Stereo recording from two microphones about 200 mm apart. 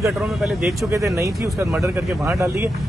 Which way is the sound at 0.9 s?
15° right (ahead or behind).